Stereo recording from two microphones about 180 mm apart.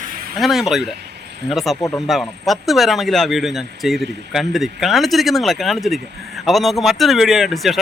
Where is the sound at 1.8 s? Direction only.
20° left (ahead or behind).